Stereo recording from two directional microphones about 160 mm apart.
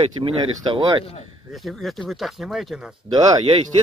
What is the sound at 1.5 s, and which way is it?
Speech, centre (ahead or behind).